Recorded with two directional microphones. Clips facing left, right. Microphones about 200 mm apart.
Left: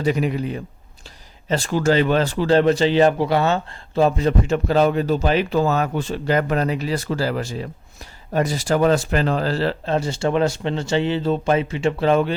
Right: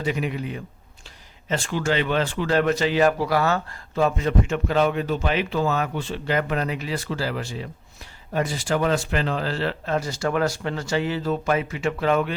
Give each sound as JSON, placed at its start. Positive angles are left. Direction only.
{"t": 0.0, "sound": "speech", "side_deg": 40}